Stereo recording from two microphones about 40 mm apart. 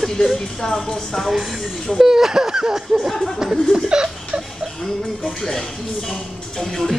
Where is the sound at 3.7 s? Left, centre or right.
Right.